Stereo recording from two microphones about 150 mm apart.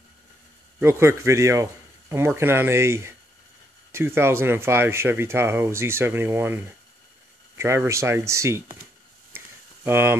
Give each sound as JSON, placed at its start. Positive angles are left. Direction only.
{"t": 0.7, "sound": "speech", "side_deg": -15}
{"t": 9.8, "sound": "speech", "side_deg": -15}